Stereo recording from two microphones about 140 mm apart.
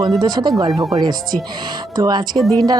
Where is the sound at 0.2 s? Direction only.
30° right (ahead or behind).